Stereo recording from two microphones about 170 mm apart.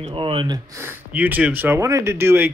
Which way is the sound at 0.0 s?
30° right (ahead or behind).